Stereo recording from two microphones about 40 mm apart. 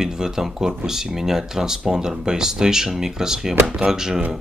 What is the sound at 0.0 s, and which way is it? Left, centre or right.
Speech, centre.